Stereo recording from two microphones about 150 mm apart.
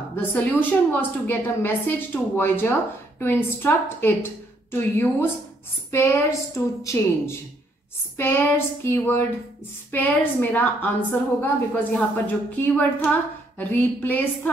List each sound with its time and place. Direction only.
0.1 s a woman's voice: 10° left (ahead or behind)